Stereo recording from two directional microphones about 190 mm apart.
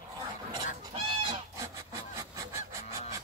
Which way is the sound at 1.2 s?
15° right (ahead or behind).